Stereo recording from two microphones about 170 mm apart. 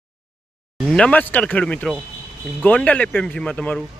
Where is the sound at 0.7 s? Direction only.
5° left (ahead or behind).